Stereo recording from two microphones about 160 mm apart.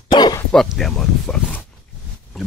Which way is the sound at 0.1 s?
25° left (ahead or behind).